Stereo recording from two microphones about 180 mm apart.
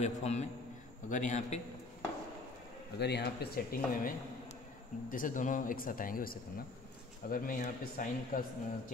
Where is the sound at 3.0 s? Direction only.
65° left (ahead or behind).